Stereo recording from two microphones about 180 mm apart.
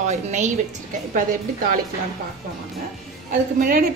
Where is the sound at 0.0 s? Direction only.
40° right (ahead or behind).